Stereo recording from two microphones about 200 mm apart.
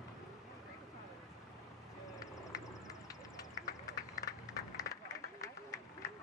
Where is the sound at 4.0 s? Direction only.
15° left (ahead or behind).